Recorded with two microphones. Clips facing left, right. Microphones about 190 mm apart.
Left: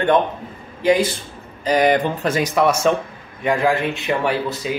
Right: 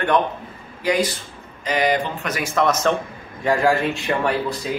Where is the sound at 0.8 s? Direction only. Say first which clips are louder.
Left 4 dB; 25° left (ahead or behind).